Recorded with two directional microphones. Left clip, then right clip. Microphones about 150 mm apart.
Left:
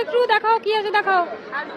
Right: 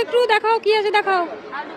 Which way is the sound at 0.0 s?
40° right (ahead or behind).